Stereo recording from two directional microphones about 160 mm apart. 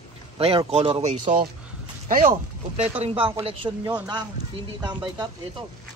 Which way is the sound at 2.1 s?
60° right (ahead or behind).